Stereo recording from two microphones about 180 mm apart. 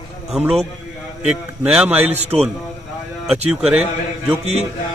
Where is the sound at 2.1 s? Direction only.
35° right (ahead or behind).